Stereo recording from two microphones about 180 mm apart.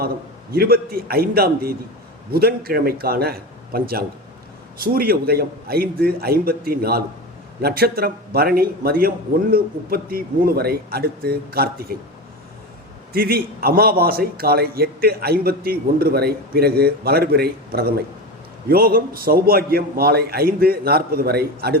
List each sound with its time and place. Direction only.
0.5 s a man's voice: 55° right (ahead or behind)
13.1 s a man's voice: 55° right (ahead or behind)